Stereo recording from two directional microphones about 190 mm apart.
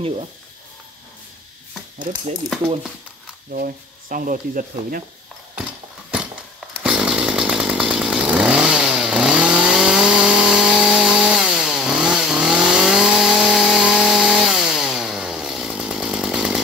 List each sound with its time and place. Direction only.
2.0 s speech: 40° right (ahead or behind)
3.5 s speech: 50° right (ahead or behind)
6.8 s chainsaw: 5° right (ahead or behind)